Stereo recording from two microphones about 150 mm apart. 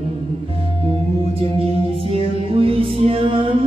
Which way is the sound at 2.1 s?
40° right (ahead or behind).